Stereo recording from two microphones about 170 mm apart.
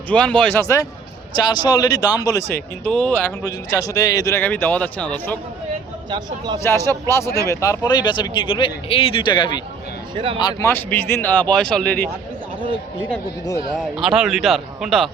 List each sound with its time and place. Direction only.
0.1 s speech: 5° left (ahead or behind)
2.8 s speech: 5° left (ahead or behind)
6.1 s speech: 25° right (ahead or behind)
6.6 s speech: 15° left (ahead or behind)
10.7 s speech: 10° left (ahead or behind)
13.7 s a man's voice: centre (ahead or behind)